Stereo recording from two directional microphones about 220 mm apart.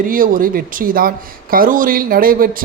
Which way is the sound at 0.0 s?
40° right (ahead or behind).